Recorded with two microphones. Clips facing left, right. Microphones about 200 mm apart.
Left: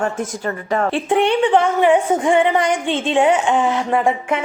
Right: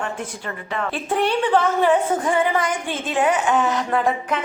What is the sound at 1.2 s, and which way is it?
A woman's voice, 20° left (ahead or behind).